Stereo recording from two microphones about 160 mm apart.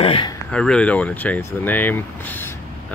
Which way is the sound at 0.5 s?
5° left (ahead or behind).